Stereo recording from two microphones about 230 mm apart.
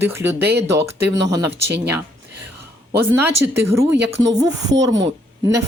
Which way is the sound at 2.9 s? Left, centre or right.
Centre.